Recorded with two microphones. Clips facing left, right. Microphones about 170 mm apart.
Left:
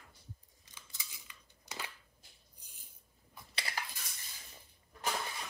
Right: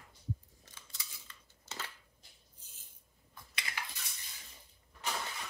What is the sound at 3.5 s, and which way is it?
Cutlery, 35° left (ahead or behind).